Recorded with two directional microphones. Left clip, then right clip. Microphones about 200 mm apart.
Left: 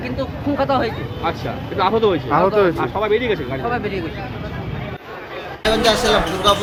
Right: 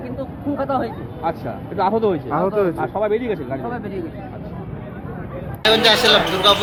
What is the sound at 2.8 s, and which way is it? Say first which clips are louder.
Speech: left 2 dB; 50° right (ahead or behind).